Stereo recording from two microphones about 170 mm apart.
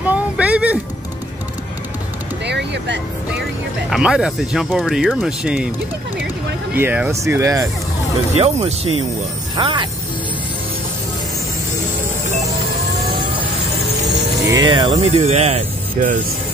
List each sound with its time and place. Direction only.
0.0 s a sound: 10° right (ahead or behind)
2.4 s vehicle: 85° right
3.9 s speech: 5° right (ahead or behind)
6.7 s speech: 10° right (ahead or behind)
8.4 s speech: 40° right (ahead or behind)
14.0 s vehicle: 25° right (ahead or behind)
15.0 s speech: 40° right (ahead or behind)